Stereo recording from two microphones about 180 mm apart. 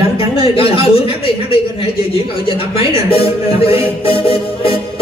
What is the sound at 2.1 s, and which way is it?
A man's voice, 30° left (ahead or behind).